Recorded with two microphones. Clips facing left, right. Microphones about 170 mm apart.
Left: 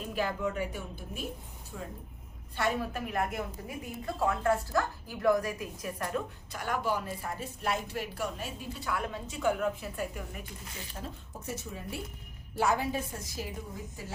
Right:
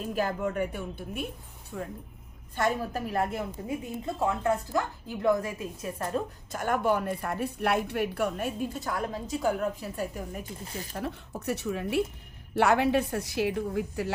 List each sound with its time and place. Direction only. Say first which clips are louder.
0.1 s a woman's voice: right 2 dB; 45° right (ahead or behind); by 1.9 s 60° right (ahead or behind)
2.6 s speech: right 3 dB; 40° right (ahead or behind)
4.0 s a woman's voice: even; 20° right (ahead or behind)
6.5 s a woman's voice: right 6 dB; 50° right (ahead or behind)
10.9 s a woman's voice: right 9 dB; 70° right (ahead or behind)